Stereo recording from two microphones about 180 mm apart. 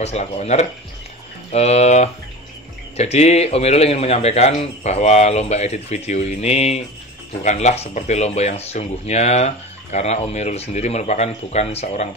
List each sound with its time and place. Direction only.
0.0 s speech: 35° left (ahead or behind)